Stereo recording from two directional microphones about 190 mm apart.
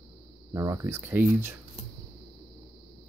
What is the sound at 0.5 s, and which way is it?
Speech, 15° right (ahead or behind).